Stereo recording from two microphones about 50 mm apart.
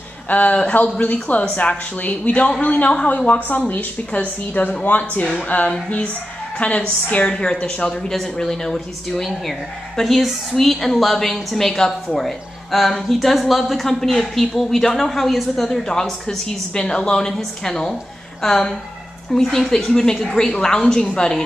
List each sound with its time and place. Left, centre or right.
0.3 s speech: left
3.1 s a woman's voice: left; by 21.5 s centre